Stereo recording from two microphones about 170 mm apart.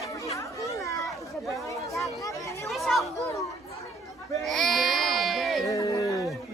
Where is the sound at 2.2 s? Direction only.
20° left (ahead or behind).